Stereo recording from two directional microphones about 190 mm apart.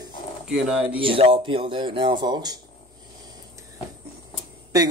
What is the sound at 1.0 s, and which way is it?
Speech, 30° right (ahead or behind).